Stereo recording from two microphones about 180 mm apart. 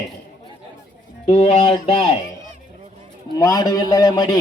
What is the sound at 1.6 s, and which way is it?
Speech, 25° left (ahead or behind).